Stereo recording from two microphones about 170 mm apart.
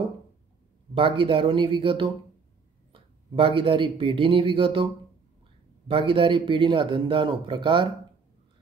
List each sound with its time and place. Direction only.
0.9 s speech: 30° right (ahead or behind)
5.9 s speech: 30° right (ahead or behind)